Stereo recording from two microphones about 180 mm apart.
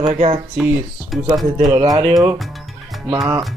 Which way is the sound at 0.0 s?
40° right (ahead or behind).